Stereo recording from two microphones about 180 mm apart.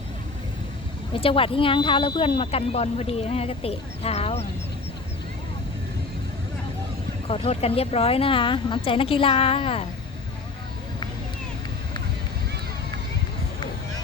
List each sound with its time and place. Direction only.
1.1 s speech: 30° left (ahead or behind)
7.3 s speech: 35° left (ahead or behind)